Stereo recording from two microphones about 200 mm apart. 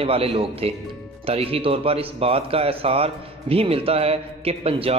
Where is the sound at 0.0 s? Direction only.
30° right (ahead or behind).